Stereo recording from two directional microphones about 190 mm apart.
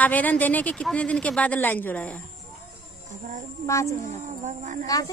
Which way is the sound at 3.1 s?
40° right (ahead or behind).